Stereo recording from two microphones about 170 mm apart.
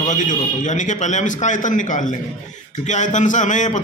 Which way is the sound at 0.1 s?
45° left (ahead or behind).